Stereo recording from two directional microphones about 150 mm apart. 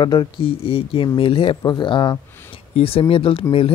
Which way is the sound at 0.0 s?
30° left (ahead or behind).